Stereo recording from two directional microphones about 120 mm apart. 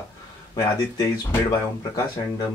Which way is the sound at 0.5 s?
30° left (ahead or behind).